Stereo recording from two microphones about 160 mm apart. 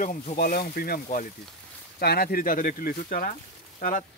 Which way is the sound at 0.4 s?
70° left (ahead or behind).